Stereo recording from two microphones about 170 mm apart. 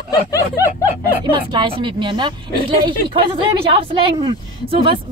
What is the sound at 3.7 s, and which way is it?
A woman's voice, 30° right (ahead or behind).